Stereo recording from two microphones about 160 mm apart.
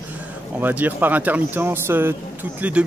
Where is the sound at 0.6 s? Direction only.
10° right (ahead or behind).